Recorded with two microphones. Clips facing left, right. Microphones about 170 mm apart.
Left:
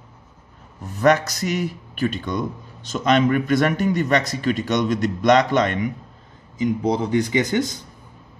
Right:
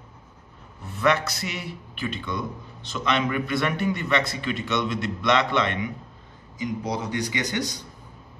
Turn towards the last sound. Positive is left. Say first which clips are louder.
# left 7 dB
turn(degrees=50)  # may be behind; listen again after turning